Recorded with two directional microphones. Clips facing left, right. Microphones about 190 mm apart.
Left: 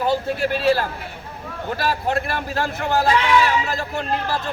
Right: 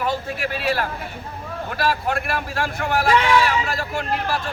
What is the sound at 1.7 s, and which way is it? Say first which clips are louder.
A man's voice: left 1 dB; 25° left (ahead or behind).